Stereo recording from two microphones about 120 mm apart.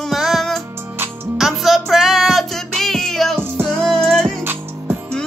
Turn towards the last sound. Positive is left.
turn(degrees=-15)  # may be behind; listen again after turning